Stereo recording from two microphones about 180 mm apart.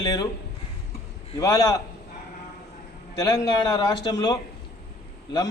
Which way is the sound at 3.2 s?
20° left (ahead or behind).